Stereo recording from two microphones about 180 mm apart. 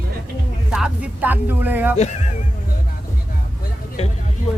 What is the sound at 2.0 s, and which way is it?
Speech, 40° left (ahead or behind).